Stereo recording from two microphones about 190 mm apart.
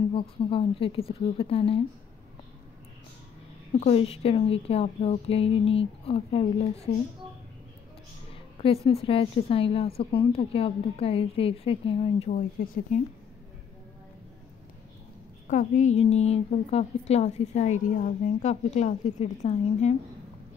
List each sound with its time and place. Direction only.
0.1 s a woman's voice: 30° left (ahead or behind)
3.8 s a woman's voice: 30° left (ahead or behind)
8.5 s a woman's voice: 30° left (ahead or behind)
12.3 s speech: 45° left (ahead or behind)
15.4 s a woman's voice: 40° left (ahead or behind)